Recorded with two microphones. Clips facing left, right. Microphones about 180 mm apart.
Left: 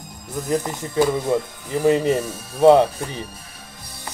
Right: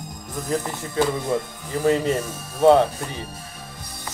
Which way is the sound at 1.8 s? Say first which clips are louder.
Left 3 dB; 15° left (ahead or behind).